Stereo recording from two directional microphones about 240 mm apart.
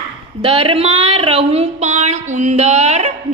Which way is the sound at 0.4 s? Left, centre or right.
Right.